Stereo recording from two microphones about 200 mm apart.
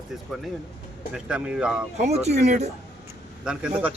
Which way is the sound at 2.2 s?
35° right (ahead or behind).